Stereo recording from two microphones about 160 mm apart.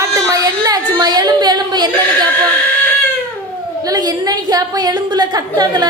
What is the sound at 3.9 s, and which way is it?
A woman's voice, 25° right (ahead or behind).